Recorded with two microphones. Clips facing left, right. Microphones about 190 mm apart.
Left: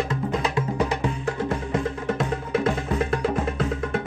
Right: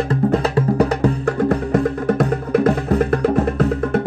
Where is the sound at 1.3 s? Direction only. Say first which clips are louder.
Right 7 dB; 60° right (ahead or behind).